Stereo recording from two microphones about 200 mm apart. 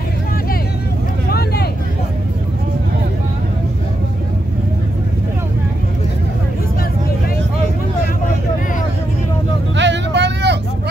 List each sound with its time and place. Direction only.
1.3 s vehicle: 55° left (ahead or behind)
9.8 s vehicle: 60° right (ahead or behind)